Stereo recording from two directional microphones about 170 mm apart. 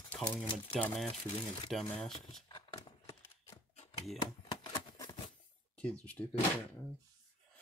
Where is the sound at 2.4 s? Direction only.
25° left (ahead or behind).